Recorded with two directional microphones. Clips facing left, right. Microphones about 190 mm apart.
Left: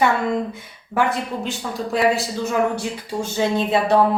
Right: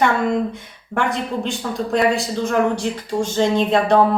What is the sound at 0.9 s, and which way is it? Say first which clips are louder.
Speech: even; 5° left (ahead or behind).